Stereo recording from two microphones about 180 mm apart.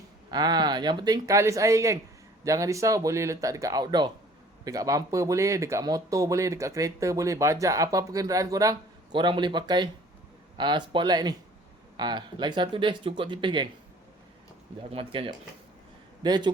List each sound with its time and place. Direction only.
0.3 s speech: 20° right (ahead or behind)
14.9 s speech: 30° right (ahead or behind)